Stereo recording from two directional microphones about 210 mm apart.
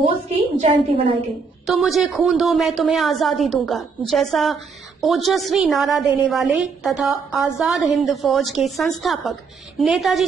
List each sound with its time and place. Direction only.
0.6 s a woman's voice: 25° right (ahead or behind)
1.7 s a woman's voice: centre (ahead or behind)